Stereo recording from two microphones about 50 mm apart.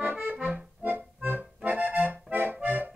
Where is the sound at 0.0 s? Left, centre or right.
Right.